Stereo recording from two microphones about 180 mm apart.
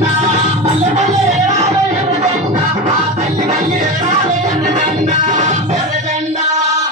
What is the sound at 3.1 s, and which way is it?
Music, 35° right (ahead or behind).